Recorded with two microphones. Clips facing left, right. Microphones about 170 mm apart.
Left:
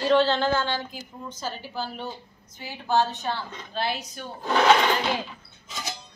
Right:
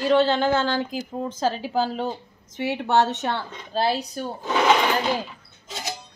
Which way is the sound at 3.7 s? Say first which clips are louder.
Right 6 dB; 35° right (ahead or behind).